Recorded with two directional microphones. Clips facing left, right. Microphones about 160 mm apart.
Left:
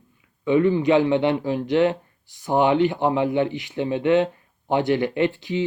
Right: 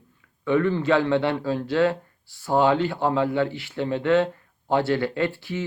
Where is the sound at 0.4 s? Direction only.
15° left (ahead or behind).